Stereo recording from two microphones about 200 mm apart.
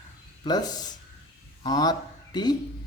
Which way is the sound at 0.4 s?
20° left (ahead or behind).